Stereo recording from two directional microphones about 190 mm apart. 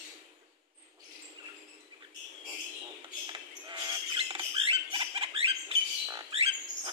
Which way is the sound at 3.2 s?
25° right (ahead or behind).